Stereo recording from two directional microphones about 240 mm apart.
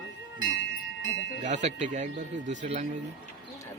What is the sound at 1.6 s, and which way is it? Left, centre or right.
Speech, right.